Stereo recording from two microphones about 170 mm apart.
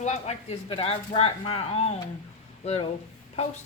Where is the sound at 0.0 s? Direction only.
40° left (ahead or behind).